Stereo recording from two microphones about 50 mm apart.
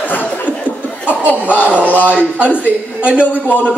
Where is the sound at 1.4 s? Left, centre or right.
Right.